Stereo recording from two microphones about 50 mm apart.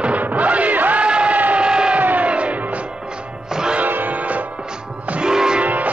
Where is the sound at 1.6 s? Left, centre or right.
Centre.